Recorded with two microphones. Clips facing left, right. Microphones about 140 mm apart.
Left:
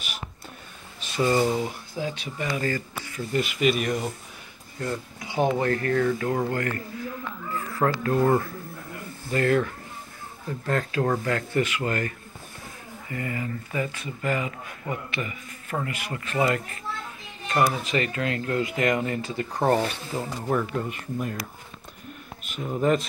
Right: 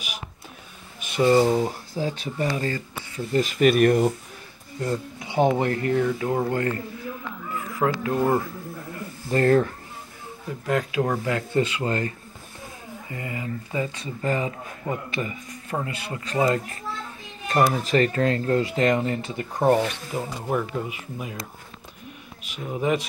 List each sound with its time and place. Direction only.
1.0 s speech: 20° right (ahead or behind); by 4.1 s 55° right (ahead or behind)
4.7 s speech: 25° right (ahead or behind); by 8.5 s 10° right (ahead or behind)
9.3 s speech: 35° right (ahead or behind)
10.7 s speech: 10° right (ahead or behind)
11.2 s speech: 20° right (ahead or behind)
13.1 s speech: 20° right (ahead or behind)
15.7 s speech: 20° right (ahead or behind)
17.5 s speech: 40° right (ahead or behind); by 21.4 s 5° right (ahead or behind)
22.4 s speech: 5° right (ahead or behind)